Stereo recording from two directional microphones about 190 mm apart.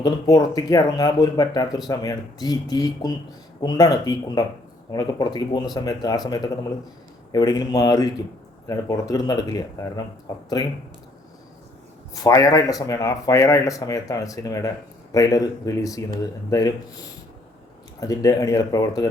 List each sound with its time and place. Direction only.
0.0 s speech: 20° left (ahead or behind)
7.3 s speech: 20° left (ahead or behind)
12.1 s speech: 20° left (ahead or behind)
18.0 s speech: 20° left (ahead or behind)